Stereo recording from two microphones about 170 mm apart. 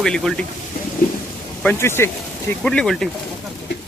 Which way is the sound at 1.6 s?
10° left (ahead or behind).